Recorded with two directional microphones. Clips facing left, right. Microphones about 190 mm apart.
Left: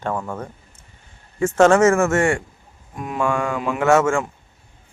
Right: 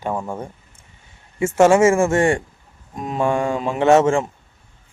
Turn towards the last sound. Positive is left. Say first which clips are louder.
# right 2 dB
turn(degrees=-20)  # may be behind; listen again after turning